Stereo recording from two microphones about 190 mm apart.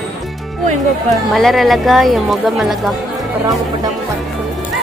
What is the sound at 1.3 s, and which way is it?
Speech, centre (ahead or behind).